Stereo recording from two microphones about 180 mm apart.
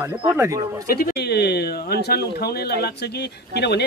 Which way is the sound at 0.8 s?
60° left (ahead or behind).